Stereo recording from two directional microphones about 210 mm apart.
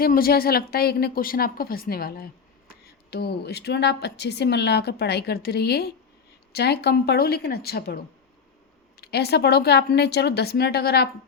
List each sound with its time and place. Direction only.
0.0 s speech: 45° left (ahead or behind)